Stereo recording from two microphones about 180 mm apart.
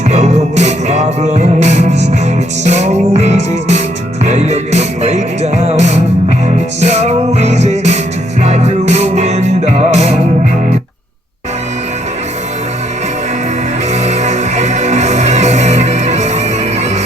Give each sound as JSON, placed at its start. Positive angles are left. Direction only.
{"t": 0.1, "sound": "music", "side_deg": -40}
{"t": 13.9, "sound": "music", "side_deg": -40}